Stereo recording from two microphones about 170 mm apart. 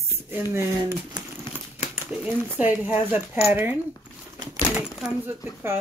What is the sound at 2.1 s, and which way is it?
Speech, 5° right (ahead or behind).